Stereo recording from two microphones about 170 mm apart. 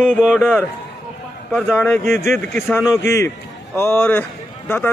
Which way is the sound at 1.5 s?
10° left (ahead or behind).